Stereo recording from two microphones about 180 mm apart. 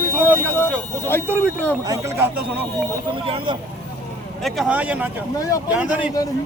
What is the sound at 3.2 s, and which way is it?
Speech, 30° right (ahead or behind).